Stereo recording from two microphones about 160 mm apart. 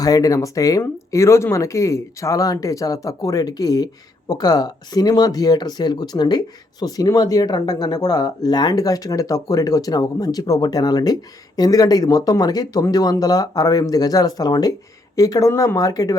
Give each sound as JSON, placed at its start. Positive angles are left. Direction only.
{"t": 0.0, "sound": "speech", "side_deg": 20}